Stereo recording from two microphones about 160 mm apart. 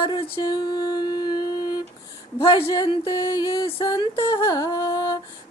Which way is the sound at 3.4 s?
30° left (ahead or behind).